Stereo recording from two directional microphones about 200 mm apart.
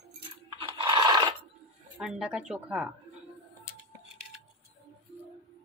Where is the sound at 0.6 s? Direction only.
25° right (ahead or behind).